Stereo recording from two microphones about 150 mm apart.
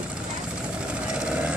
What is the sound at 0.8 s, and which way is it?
Vehicle, 5° right (ahead or behind).